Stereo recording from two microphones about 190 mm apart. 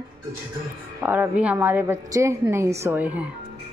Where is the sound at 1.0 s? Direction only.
10° right (ahead or behind).